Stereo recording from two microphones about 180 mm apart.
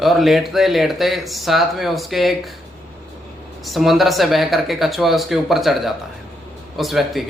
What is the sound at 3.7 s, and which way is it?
Speech, centre (ahead or behind).